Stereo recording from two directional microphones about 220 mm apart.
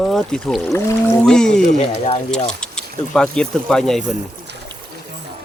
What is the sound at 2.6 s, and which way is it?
Speech, 5° left (ahead or behind).